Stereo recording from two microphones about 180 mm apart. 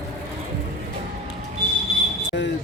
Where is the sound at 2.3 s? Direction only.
65° left (ahead or behind).